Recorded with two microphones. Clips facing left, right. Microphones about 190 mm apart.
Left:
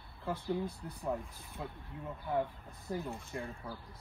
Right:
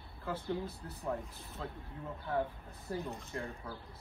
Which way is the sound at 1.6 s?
15° left (ahead or behind).